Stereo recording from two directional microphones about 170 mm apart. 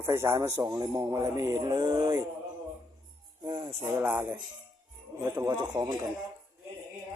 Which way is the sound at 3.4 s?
25° right (ahead or behind).